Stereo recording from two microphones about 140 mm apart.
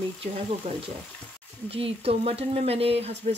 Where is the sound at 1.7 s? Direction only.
45° right (ahead or behind).